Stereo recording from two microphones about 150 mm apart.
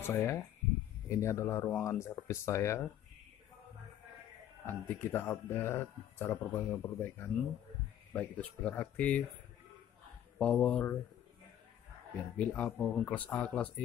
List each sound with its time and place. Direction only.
0.0 s speech: 20° left (ahead or behind)
4.6 s speech: 15° left (ahead or behind)
10.4 s speech: 5° left (ahead or behind)
12.4 s speech: 10° left (ahead or behind)